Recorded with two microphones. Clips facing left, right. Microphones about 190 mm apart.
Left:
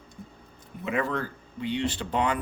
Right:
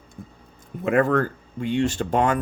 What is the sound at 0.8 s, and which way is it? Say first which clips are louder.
Speech: right 9 dB; 50° right (ahead or behind).